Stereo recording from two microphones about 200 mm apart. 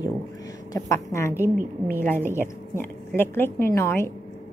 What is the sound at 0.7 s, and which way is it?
Speech, 15° left (ahead or behind).